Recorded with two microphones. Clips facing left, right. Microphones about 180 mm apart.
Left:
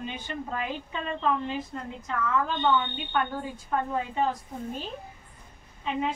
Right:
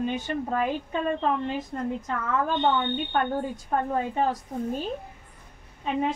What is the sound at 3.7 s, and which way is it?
Speech, 40° right (ahead or behind).